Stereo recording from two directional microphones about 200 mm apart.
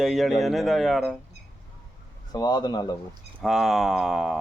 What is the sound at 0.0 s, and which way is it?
Speech, centre (ahead or behind).